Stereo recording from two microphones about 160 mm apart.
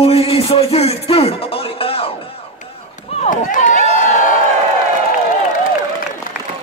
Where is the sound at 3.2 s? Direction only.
55° left (ahead or behind).